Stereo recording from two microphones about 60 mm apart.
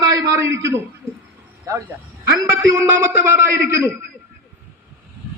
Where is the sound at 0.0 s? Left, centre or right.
Right.